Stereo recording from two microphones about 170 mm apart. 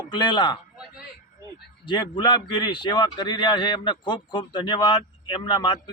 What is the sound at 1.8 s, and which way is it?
A man's voice, 25° left (ahead or behind).